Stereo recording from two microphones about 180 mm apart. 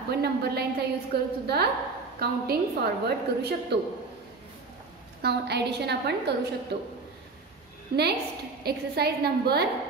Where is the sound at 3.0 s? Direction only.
65° right (ahead or behind).